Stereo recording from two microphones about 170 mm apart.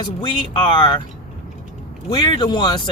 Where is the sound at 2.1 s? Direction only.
30° left (ahead or behind).